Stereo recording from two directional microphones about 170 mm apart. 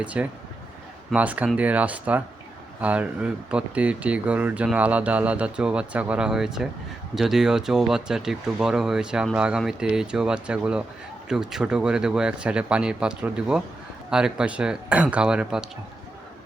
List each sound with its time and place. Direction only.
0.0 s speech: 5° right (ahead or behind)